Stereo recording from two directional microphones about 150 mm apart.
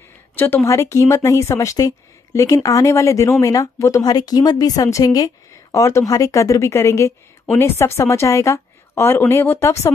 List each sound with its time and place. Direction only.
0.7 s a woman's voice: 20° left (ahead or behind)